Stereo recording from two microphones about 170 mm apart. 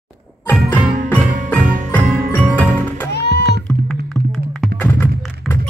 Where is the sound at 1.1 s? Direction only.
5° left (ahead or behind).